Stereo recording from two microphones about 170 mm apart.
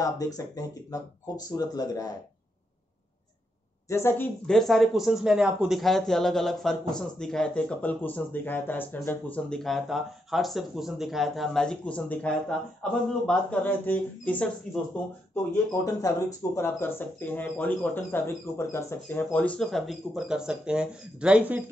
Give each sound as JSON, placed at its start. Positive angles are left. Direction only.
{"t": 0.4, "sound": "speech", "side_deg": 20}
{"t": 3.9, "sound": "speech", "side_deg": 15}
{"t": 15.5, "sound": "speech", "side_deg": 20}